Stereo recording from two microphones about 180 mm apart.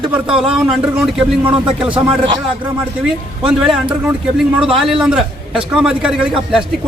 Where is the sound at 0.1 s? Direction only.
5° right (ahead or behind).